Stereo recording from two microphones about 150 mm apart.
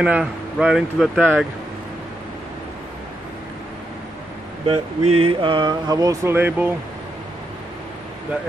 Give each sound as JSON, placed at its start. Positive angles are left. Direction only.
{"t": 0.0, "sound": "speech", "side_deg": -5}
{"t": 4.6, "sound": "speech", "side_deg": -40}
{"t": 6.3, "sound": "speech", "side_deg": -15}